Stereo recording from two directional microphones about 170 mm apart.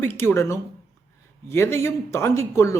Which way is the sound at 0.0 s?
10° left (ahead or behind).